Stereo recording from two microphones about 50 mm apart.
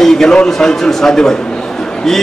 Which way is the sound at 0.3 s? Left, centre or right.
Centre.